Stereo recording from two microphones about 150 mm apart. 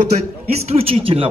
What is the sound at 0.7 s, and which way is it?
Speech, 40° right (ahead or behind).